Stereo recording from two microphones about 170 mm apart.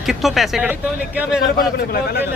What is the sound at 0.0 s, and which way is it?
Speech, centre (ahead or behind).